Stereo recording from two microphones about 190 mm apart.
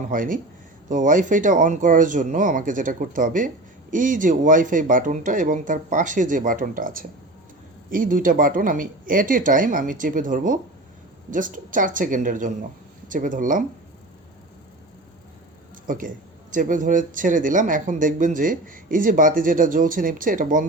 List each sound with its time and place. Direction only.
0.1 s speech: 45° right (ahead or behind)
15.9 s speech: 45° right (ahead or behind)